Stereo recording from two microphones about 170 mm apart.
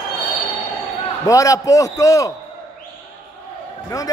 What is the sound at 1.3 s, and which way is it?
A man's voice, 20° left (ahead or behind).